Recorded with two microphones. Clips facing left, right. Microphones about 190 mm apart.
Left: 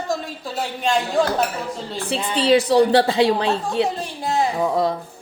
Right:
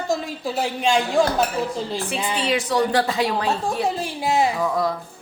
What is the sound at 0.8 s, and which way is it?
Speech, centre (ahead or behind).